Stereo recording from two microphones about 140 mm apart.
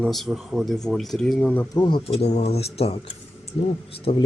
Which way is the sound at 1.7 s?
30° left (ahead or behind).